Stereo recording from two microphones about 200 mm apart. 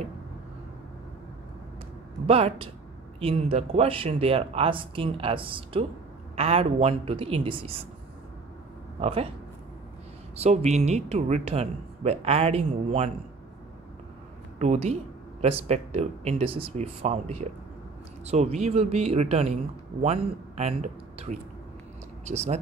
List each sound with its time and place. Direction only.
2.2 s speech: 30° right (ahead or behind)
9.0 s speech: 30° right (ahead or behind)
10.3 s speech: 30° right (ahead or behind)
14.6 s speech: 35° right (ahead or behind)